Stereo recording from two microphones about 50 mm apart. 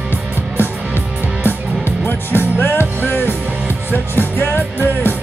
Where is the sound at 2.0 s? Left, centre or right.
Left.